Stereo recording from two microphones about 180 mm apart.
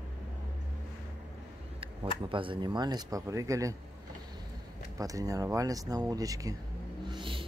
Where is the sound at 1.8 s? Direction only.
25° right (ahead or behind).